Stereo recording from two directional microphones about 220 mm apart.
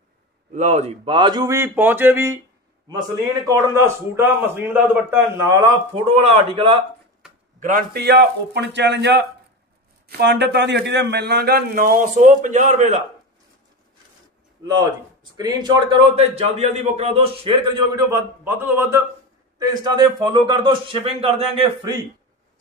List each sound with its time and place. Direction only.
0.5 s a man's voice: 30° right (ahead or behind); by 2.4 s 10° right (ahead or behind)
3.4 s a man's voice: 10° right (ahead or behind)
6.0 s a man's voice: 25° right (ahead or behind)
7.2 s a sound: 5° right (ahead or behind)
7.6 s a man's voice: 40° right (ahead or behind)
15.3 s a man's voice: 20° right (ahead or behind)